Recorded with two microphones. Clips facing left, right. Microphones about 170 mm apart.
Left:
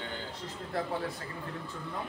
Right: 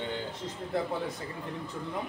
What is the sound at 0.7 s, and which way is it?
Speech, 20° right (ahead or behind).